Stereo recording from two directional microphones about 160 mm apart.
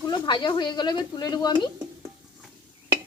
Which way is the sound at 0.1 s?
30° left (ahead or behind).